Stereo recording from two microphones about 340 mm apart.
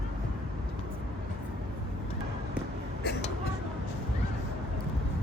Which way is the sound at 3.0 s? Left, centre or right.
Left.